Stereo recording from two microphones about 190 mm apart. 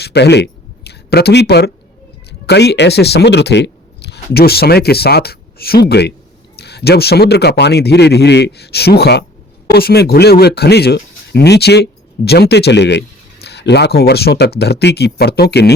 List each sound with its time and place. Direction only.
0.0 s speech: 60° left (ahead or behind)